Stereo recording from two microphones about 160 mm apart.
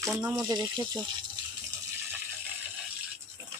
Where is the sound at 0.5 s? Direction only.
30° right (ahead or behind).